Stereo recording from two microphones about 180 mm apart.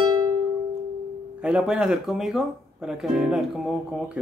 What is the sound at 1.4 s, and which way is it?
Speech, 5° right (ahead or behind).